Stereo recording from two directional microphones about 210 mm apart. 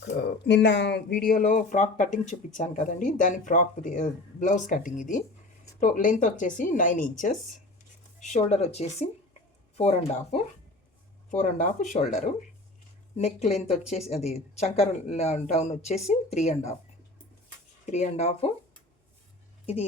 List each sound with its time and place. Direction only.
0.4 s speech: 55° left (ahead or behind); by 16.7 s 30° left (ahead or behind)
17.9 s speech: 30° left (ahead or behind)